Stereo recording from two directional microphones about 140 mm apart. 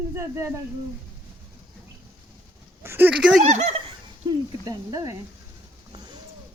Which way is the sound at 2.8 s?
15° right (ahead or behind).